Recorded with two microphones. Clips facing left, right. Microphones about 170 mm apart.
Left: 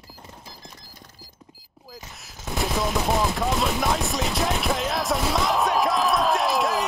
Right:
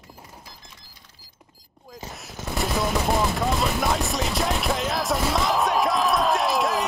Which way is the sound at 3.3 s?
Centre (ahead or behind).